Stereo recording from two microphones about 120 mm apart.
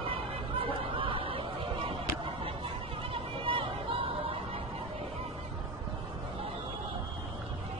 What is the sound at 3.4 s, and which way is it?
Chatter, 45° right (ahead or behind).